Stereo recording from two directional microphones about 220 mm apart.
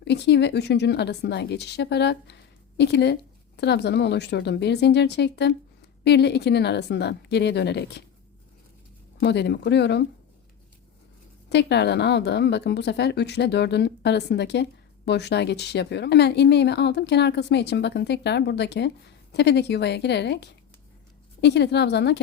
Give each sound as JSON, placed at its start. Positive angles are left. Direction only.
{"t": 0.0, "sound": "speech", "side_deg": 50}
{"t": 9.2, "sound": "speech", "side_deg": 50}
{"t": 11.4, "sound": "speech", "side_deg": 50}